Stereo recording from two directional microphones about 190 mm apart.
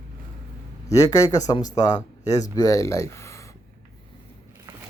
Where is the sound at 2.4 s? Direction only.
20° left (ahead or behind).